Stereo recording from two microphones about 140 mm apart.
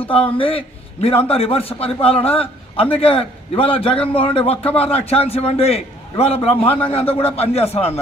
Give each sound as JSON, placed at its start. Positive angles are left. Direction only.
{"t": 0.0, "sound": "a man's voice", "side_deg": 40}